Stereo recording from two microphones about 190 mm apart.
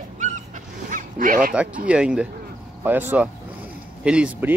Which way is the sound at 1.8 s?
5° right (ahead or behind).